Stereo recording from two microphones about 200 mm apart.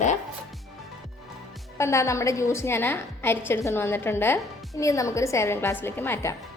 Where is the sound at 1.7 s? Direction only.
15° left (ahead or behind).